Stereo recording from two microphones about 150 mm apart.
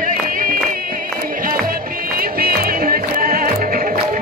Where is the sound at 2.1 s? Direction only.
85° right.